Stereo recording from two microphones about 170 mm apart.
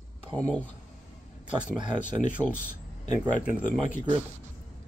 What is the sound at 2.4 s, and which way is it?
Speech, 15° right (ahead or behind).